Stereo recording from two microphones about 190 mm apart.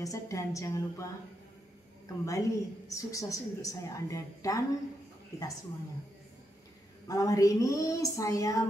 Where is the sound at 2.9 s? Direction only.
15° left (ahead or behind).